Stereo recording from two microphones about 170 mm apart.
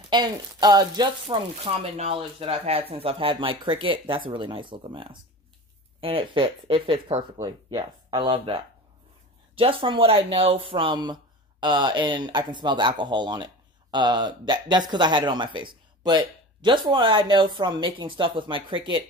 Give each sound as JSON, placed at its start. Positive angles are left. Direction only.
{"t": 0.1, "sound": "speech", "side_deg": -25}
{"t": 7.3, "sound": "speech", "side_deg": -20}